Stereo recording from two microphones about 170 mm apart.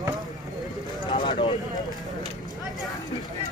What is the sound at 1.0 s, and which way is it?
Vehicle, 25° left (ahead or behind).